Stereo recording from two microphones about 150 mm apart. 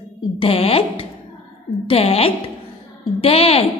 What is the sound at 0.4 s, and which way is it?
A woman's voice, 40° left (ahead or behind).